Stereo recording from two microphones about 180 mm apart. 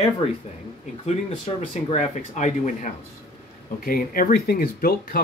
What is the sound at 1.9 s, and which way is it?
Speech, 40° left (ahead or behind).